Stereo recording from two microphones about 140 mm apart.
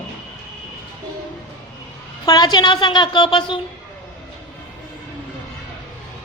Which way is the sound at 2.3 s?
30° left (ahead or behind).